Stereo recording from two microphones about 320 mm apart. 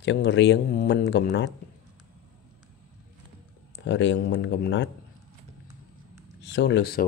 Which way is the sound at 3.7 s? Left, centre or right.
Left.